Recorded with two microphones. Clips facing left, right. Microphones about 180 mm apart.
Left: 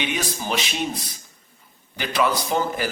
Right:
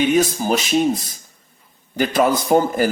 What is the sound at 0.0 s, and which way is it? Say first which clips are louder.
A man's voice: right 10 dB; 45° right (ahead or behind).